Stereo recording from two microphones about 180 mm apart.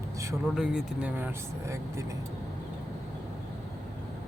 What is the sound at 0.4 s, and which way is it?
Speech, 5° right (ahead or behind).